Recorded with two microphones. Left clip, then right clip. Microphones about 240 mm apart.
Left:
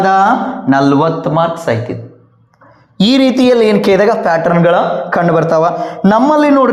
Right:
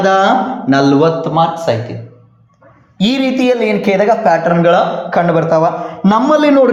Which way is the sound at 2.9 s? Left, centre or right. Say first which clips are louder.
Left 4 dB; left.